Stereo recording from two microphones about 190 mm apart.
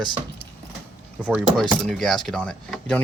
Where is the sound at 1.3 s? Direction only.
Centre (ahead or behind).